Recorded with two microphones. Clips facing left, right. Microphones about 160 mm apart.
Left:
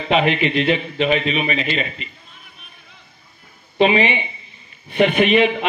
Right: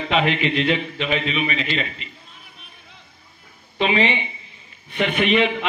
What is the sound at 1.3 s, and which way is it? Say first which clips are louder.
Speech: left 3 dB; 50° left (ahead or behind).